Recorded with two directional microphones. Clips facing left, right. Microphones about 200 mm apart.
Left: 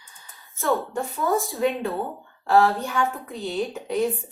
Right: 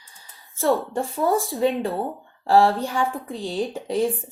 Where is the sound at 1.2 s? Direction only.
30° right (ahead or behind).